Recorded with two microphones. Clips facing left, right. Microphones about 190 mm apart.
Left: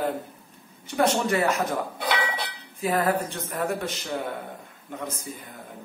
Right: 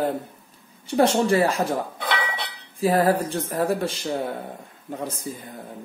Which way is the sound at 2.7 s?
35° right (ahead or behind).